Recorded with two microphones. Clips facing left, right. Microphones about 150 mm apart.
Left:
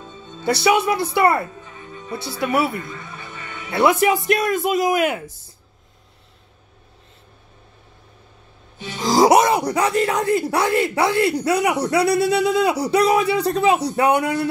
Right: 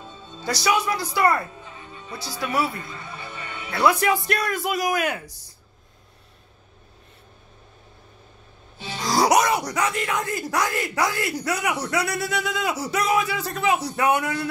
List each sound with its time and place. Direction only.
0.5 s speech: 25° left (ahead or behind)
3.7 s speech: 20° left (ahead or behind)
9.0 s speech: 25° left (ahead or behind)